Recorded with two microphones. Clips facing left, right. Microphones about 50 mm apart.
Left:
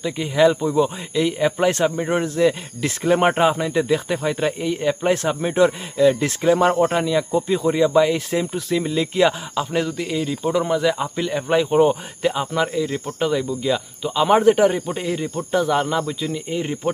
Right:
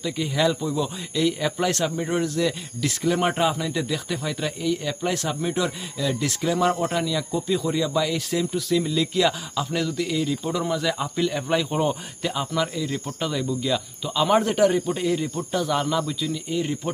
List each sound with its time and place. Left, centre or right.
0.0 s speech: left